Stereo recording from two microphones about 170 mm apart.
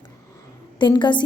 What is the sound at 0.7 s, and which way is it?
Speech, 25° left (ahead or behind).